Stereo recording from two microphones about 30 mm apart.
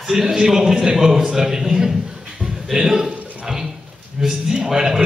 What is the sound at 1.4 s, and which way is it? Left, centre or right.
Speech, centre.